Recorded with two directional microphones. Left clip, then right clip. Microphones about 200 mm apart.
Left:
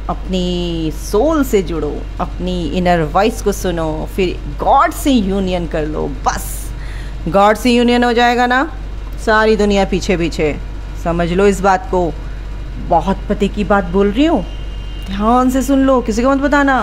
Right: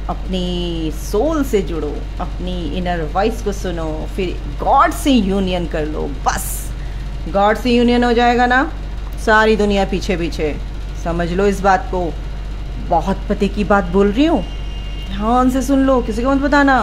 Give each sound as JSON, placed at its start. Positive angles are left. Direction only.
{"t": 0.0, "sound": "speech", "side_deg": 15}
{"t": 7.3, "sound": "speech", "side_deg": 25}
{"t": 15.0, "sound": "speech", "side_deg": 15}